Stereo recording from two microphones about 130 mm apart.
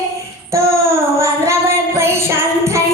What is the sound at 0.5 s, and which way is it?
Child singing, 25° right (ahead or behind).